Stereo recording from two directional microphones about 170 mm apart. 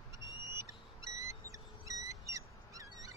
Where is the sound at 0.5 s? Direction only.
15° right (ahead or behind).